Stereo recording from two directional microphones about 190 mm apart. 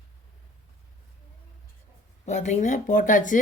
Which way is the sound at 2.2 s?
40° left (ahead or behind).